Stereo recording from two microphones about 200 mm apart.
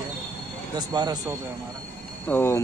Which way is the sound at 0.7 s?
20° right (ahead or behind).